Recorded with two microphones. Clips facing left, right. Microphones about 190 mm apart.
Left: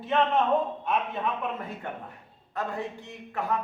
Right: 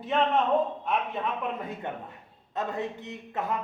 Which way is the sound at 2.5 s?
20° right (ahead or behind).